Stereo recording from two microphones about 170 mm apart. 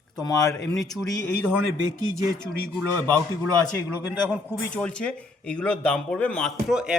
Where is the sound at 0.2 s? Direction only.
20° left (ahead or behind).